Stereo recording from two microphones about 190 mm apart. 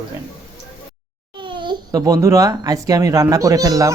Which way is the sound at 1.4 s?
25° right (ahead or behind).